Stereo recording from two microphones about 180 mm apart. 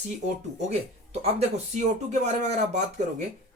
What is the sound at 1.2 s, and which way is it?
Speech, 35° right (ahead or behind).